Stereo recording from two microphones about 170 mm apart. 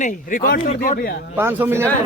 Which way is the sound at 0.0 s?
55° left (ahead or behind).